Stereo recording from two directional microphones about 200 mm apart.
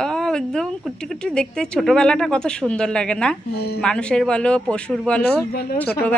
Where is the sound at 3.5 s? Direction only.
55° left (ahead or behind).